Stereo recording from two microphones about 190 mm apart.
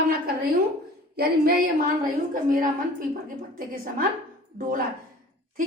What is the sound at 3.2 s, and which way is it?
Speech, 45° right (ahead or behind).